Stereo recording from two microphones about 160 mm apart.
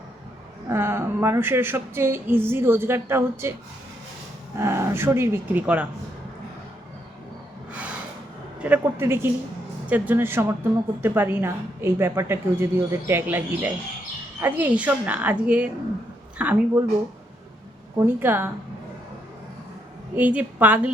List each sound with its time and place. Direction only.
0.7 s a woman's voice: 15° right (ahead or behind)
4.5 s a woman's voice: 15° right (ahead or behind)
7.7 s snort: 10° right (ahead or behind)
8.6 s a woman's voice: 10° right (ahead or behind)
17.9 s a woman's voice: 15° right (ahead or behind)
20.1 s a woman's voice: 10° right (ahead or behind)